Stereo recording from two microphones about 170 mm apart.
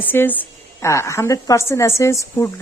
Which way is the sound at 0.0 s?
10° left (ahead or behind).